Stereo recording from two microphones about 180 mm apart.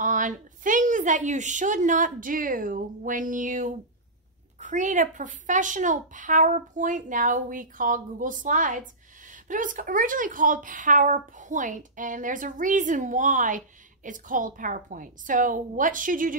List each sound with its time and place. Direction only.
0.0 s a woman's voice: 45° right (ahead or behind)